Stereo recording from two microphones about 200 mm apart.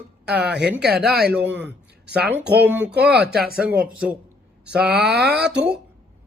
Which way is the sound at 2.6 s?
10° right (ahead or behind).